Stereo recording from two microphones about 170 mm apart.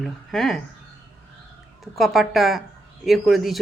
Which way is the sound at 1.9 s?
Centre (ahead or behind).